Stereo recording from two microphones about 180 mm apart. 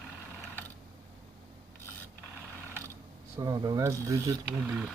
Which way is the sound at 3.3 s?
20° right (ahead or behind).